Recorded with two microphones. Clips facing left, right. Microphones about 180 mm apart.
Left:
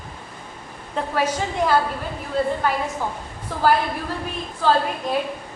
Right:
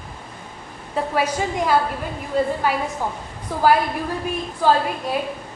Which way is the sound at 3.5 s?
15° right (ahead or behind).